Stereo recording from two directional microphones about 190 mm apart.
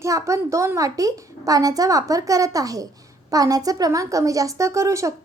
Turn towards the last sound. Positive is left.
turn(degrees=-15)  # may be behind; listen again after turning